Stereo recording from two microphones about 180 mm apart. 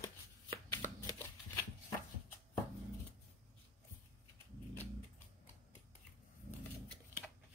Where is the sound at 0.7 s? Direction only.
15° left (ahead or behind).